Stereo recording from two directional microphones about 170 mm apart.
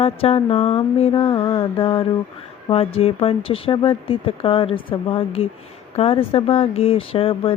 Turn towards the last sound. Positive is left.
turn(degrees=35)  # may be behind; listen again after turning